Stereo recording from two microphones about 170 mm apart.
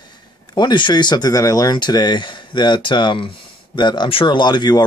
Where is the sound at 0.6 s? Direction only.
25° left (ahead or behind).